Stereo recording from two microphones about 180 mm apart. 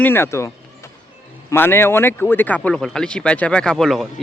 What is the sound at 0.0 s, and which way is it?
Speech, 15° left (ahead or behind).